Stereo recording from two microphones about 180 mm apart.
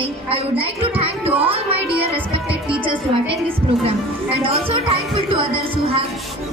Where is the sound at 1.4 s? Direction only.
30° right (ahead or behind).